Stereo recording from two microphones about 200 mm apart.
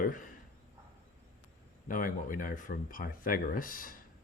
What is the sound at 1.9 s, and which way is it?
Speech, 40° left (ahead or behind).